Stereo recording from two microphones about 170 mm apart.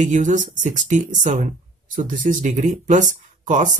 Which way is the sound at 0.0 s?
45° right (ahead or behind).